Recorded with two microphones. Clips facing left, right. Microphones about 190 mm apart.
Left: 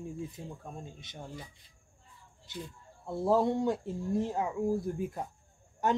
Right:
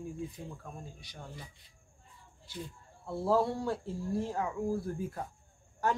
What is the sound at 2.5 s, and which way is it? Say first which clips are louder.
Speech: left 1 dB; 20° left (ahead or behind).